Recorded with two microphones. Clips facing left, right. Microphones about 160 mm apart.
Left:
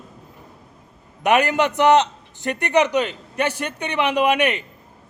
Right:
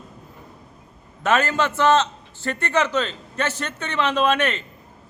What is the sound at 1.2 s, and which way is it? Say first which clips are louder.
A man's voice: left 3 dB; 15° left (ahead or behind).